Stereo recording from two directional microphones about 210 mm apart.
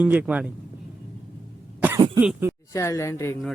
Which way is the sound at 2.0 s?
20° right (ahead or behind).